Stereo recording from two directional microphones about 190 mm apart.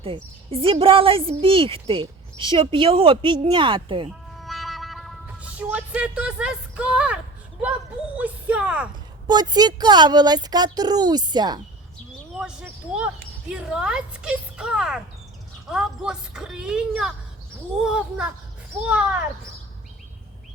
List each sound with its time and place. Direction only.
0.0 s a woman's voice: 30° right (ahead or behind)
4.4 s music: centre (ahead or behind)
8.1 s speech: 5° right (ahead or behind)
9.2 s a woman's voice: 20° right (ahead or behind)
12.4 s speech: 5° right (ahead or behind)